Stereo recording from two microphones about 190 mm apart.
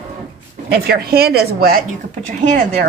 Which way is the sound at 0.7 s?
55° right (ahead or behind).